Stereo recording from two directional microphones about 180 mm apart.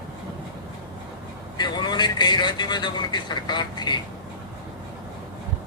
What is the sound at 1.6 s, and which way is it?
Speech, 25° left (ahead or behind).